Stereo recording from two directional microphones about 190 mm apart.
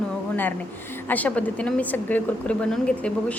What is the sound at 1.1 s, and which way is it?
A woman's voice, 10° left (ahead or behind).